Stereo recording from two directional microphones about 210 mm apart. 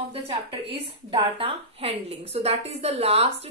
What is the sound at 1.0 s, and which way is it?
A woman's voice, 30° right (ahead or behind).